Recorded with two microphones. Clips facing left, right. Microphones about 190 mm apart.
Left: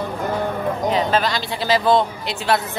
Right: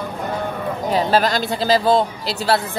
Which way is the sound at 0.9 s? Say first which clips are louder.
Right 5 dB; 40° right (ahead or behind).